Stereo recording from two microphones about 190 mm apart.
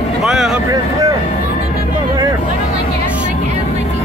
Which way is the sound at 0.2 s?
5° right (ahead or behind).